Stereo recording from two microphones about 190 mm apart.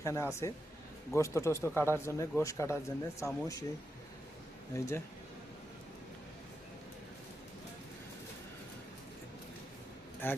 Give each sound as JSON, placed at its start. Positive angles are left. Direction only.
{"t": 0.0, "sound": "speech", "side_deg": 15}
{"t": 4.7, "sound": "speech", "side_deg": 15}
{"t": 10.2, "sound": "speech", "side_deg": 10}